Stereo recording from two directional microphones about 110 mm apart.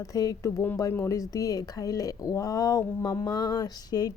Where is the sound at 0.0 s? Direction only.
30° left (ahead or behind).